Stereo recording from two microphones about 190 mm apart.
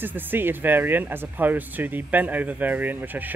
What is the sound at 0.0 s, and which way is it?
Speech, 10° right (ahead or behind).